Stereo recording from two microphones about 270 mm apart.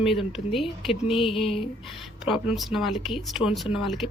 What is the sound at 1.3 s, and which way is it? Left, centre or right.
Speech, left.